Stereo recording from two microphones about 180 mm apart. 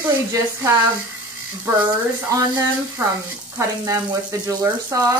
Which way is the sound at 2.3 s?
15° right (ahead or behind).